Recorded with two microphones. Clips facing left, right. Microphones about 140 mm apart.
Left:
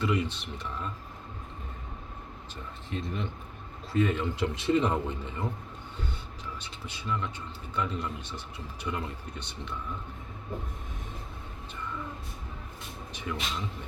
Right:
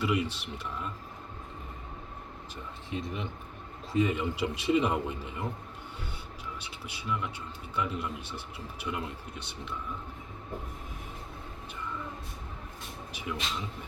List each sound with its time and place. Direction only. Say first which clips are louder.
0.0 s a man's voice: even; 5° right (ahead or behind)
2.9 s a man's voice: left 1 dB; 10° right (ahead or behind)
6.6 s a man's voice: left 1 dB; 10° right (ahead or behind)
13.3 s a man's voice: left 1 dB; 5° right (ahead or behind)